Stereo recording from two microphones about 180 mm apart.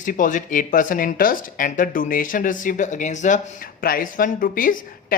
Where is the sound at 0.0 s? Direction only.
45° left (ahead or behind).